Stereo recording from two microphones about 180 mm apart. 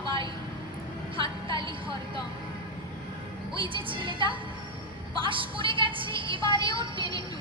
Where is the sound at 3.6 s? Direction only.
30° right (ahead or behind).